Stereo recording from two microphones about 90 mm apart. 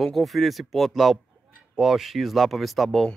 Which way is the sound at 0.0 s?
Centre (ahead or behind).